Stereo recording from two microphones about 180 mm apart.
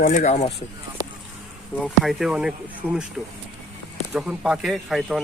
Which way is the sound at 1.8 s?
Centre (ahead or behind).